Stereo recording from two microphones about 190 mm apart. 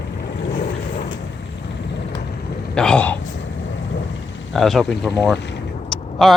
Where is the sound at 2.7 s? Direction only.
5° left (ahead or behind).